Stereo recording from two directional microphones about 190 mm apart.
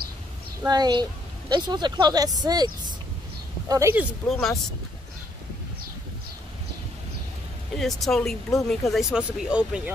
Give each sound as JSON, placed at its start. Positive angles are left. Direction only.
{"t": 0.6, "sound": "speech", "side_deg": -20}
{"t": 4.3, "sound": "speech", "side_deg": 0}
{"t": 7.7, "sound": "speech", "side_deg": 0}